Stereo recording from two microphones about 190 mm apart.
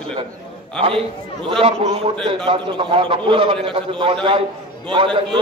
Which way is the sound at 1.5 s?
30° right (ahead or behind).